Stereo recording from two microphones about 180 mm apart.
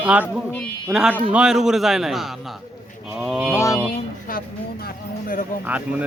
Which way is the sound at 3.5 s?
15° left (ahead or behind).